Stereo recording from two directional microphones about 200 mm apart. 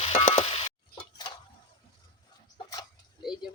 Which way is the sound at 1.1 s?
20° left (ahead or behind).